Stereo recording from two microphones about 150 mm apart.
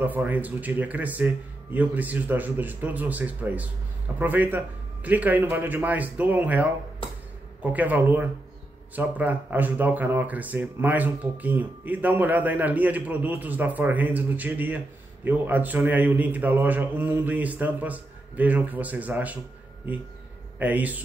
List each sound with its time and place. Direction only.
0.0 s speech: 10° right (ahead or behind)
7.7 s speech: 10° right (ahead or behind)
20.5 s speech: 10° right (ahead or behind)